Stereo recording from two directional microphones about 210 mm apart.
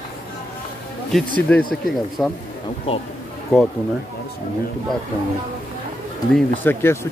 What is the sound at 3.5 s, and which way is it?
Speech, centre (ahead or behind).